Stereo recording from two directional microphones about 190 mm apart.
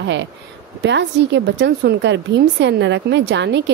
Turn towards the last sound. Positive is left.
turn(degrees=-65)  # may be behind; listen again after turning